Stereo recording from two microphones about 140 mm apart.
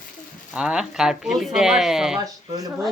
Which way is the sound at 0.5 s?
5° right (ahead or behind).